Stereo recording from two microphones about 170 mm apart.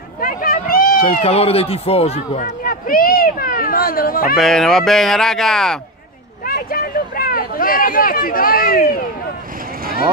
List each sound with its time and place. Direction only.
0.2 s vehicle: 55° left (ahead or behind)
1.2 s speech: 35° left (ahead or behind); by 4.4 s 60° left (ahead or behind)
4.4 s speech: centre (ahead or behind)
6.4 s speech: 60° left (ahead or behind)